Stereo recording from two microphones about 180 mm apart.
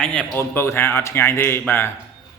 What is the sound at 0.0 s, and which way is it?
A man's voice, 5° left (ahead or behind).